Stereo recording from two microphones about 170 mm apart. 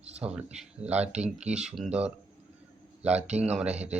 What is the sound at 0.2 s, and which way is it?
Speech, 5° right (ahead or behind).